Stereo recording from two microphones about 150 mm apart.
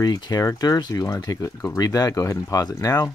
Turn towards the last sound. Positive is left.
turn(degrees=25)  # may be behind; listen again after turning